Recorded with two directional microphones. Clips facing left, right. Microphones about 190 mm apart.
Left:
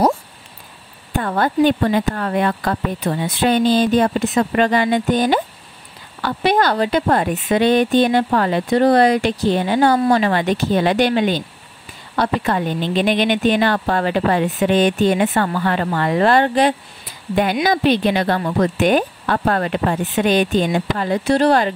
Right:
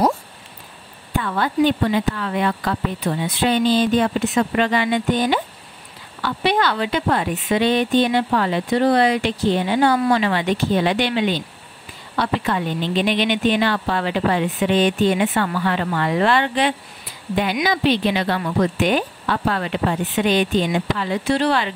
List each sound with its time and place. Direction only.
1.1 s a woman's voice: 45° left (ahead or behind)